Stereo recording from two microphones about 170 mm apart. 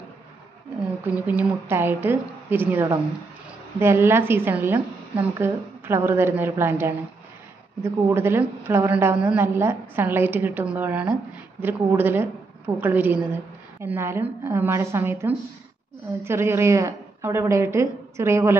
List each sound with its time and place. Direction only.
1.0 s a woman's voice: 10° right (ahead or behind)